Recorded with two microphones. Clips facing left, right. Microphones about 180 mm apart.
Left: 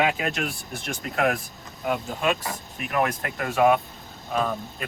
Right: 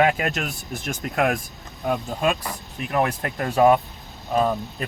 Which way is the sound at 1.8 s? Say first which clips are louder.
Right 2 dB; 35° right (ahead or behind).